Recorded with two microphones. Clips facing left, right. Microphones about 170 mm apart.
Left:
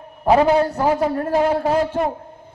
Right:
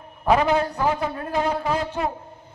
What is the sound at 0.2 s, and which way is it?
A man's voice, 35° left (ahead or behind).